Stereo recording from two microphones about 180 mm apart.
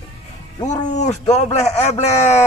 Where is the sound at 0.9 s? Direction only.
40° left (ahead or behind).